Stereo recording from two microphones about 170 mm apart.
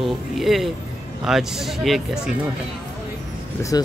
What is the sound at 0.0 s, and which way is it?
Speech, centre (ahead or behind).